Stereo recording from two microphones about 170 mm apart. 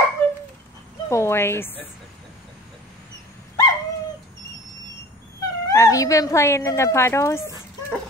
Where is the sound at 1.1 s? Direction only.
15° left (ahead or behind).